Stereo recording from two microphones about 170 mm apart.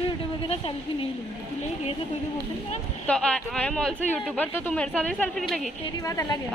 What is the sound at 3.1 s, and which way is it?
Speech, 5° left (ahead or behind).